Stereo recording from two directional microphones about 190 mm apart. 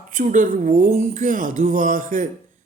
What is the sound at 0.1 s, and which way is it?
Speech, 40° right (ahead or behind).